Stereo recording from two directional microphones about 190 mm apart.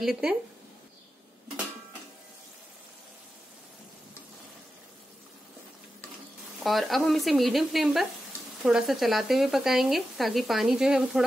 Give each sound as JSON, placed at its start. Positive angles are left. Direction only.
{"t": 0.0, "sound": "speech", "side_deg": -5}
{"t": 6.6, "sound": "speech", "side_deg": 0}